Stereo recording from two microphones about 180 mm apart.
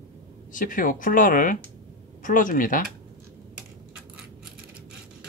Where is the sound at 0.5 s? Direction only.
50° left (ahead or behind).